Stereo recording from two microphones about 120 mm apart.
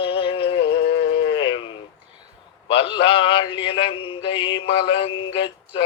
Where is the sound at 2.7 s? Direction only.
50° left (ahead or behind).